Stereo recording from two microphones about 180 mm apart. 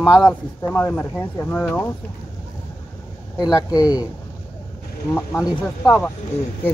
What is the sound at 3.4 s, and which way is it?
Speech, 20° left (ahead or behind).